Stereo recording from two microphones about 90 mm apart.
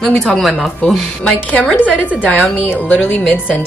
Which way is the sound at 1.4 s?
15° left (ahead or behind).